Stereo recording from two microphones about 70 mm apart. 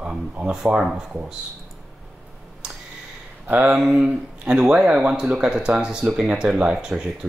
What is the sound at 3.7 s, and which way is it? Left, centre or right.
Speech, centre.